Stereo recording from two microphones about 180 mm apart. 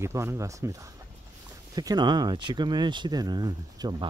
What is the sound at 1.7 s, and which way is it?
Speech, 25° right (ahead or behind).